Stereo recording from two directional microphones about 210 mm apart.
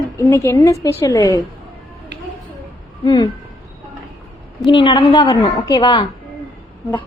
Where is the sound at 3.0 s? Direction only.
20° left (ahead or behind).